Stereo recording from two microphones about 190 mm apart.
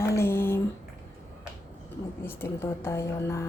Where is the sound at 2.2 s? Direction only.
10° left (ahead or behind).